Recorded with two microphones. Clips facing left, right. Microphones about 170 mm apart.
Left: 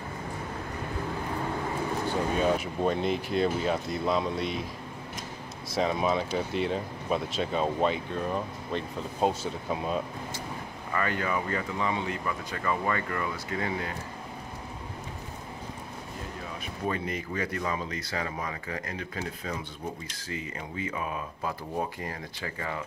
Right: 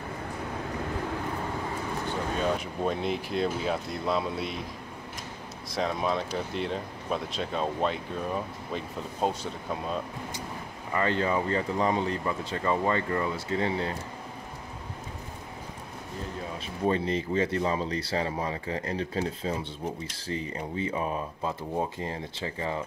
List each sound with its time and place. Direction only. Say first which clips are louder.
2.5 s speech: left 2 dB; 5° left (ahead or behind)
5.7 s speech: left 2 dB; centre (ahead or behind)
10.9 s speech: right 3 dB; 25° right (ahead or behind)
16.8 s speech: right 5 dB; 30° right (ahead or behind)